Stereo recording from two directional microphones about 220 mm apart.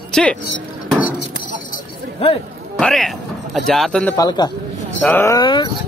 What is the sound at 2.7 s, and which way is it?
Speech, 5° left (ahead or behind).